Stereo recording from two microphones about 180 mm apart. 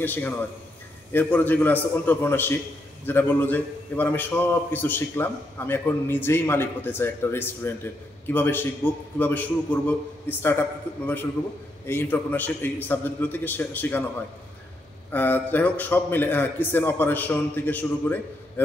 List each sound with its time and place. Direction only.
0.0 s a man's voice: 10° left (ahead or behind)
11.8 s a man's voice: 10° left (ahead or behind)
15.0 s a man's voice: 10° left (ahead or behind)